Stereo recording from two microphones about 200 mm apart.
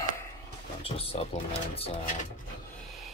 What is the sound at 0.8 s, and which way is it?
Speech, 30° left (ahead or behind).